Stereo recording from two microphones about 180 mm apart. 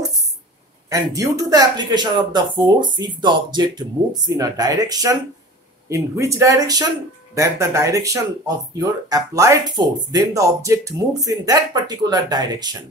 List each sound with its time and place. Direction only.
1.1 s speech: 20° right (ahead or behind)